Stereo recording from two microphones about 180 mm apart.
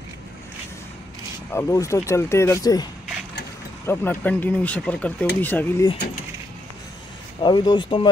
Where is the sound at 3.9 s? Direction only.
15° left (ahead or behind).